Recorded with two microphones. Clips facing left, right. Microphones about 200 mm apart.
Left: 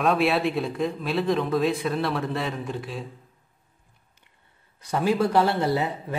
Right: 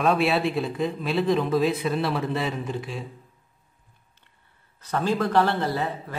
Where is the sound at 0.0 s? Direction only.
Centre (ahead or behind).